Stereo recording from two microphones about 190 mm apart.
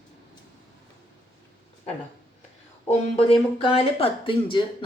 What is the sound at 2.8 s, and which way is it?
Speech, 30° left (ahead or behind).